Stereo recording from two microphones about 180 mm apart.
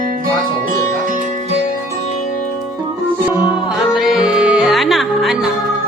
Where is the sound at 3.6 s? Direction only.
Centre (ahead or behind).